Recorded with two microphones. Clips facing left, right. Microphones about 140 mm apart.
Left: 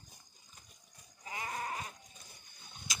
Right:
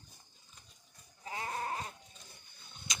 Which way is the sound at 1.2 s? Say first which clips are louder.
Right 2 dB; 30° right (ahead or behind).